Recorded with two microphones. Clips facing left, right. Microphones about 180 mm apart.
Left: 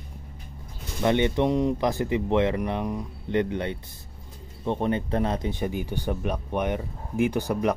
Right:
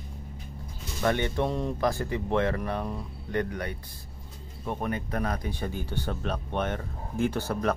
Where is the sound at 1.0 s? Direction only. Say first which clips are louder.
Left 4 dB; 20° left (ahead or behind).